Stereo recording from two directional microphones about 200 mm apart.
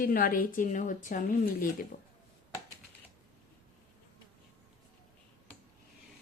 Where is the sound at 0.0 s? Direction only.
45° left (ahead or behind).